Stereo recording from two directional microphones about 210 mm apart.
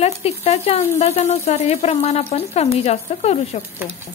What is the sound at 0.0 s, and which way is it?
Speech, 30° left (ahead or behind).